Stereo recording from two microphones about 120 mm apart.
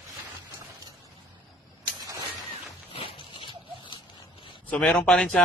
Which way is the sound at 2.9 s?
50° left (ahead or behind).